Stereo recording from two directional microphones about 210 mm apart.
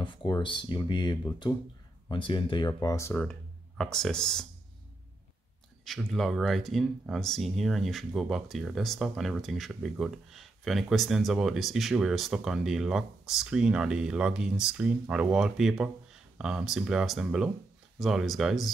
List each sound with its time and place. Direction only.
0.0 s speech: 20° left (ahead or behind); by 4.5 s 5° left (ahead or behind)
5.9 s speech: centre (ahead or behind)